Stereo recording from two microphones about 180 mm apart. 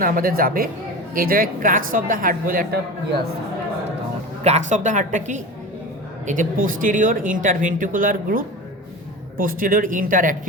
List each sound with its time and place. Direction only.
0.0 s speech: 50° right (ahead or behind)
4.4 s speech: 40° right (ahead or behind)